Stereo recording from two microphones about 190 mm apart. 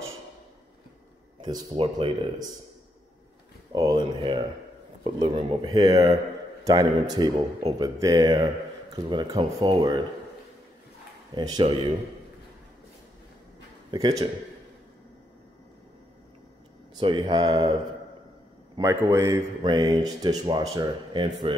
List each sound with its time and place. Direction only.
1.4 s speech: 25° right (ahead or behind)
3.7 s speech: 20° right (ahead or behind)
11.3 s speech: 20° right (ahead or behind)
13.9 s speech: 20° right (ahead or behind)
16.9 s speech: 25° right (ahead or behind)
18.8 s speech: 15° right (ahead or behind)